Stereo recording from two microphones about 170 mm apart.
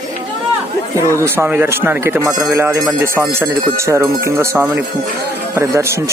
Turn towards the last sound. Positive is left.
turn(degrees=-15)  # may be behind; listen again after turning